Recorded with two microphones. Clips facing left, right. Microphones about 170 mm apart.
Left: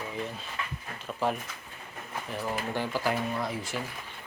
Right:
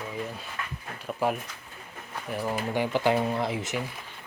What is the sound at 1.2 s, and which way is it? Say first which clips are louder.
Speech: right 2 dB; 10° right (ahead or behind).